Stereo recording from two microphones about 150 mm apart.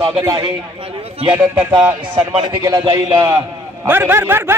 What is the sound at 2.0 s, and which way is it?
A man's voice, 25° right (ahead or behind).